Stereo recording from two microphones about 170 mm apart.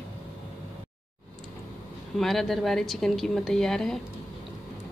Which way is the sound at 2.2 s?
Centre (ahead or behind).